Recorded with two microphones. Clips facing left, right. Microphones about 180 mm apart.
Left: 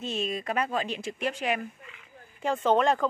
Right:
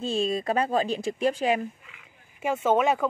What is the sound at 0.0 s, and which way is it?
Speech, 30° right (ahead or behind).